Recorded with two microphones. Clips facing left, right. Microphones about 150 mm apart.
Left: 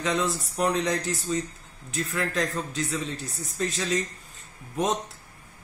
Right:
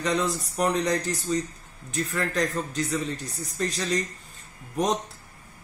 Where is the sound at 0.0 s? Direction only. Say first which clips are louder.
Right 1 dB; centre (ahead or behind).